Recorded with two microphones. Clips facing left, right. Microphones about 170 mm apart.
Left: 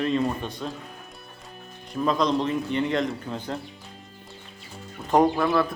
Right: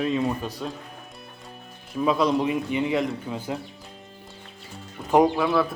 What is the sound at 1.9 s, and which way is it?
Speech, 5° right (ahead or behind).